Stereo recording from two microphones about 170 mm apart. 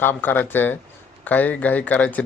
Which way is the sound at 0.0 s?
10° left (ahead or behind).